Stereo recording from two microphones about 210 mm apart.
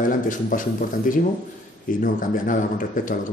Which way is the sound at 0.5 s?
40° left (ahead or behind).